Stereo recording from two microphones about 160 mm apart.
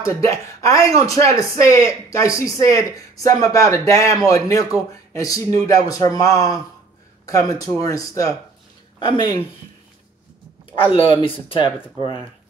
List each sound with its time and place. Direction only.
0.0 s a man's voice: 20° left (ahead or behind)
11.1 s speech: 35° left (ahead or behind)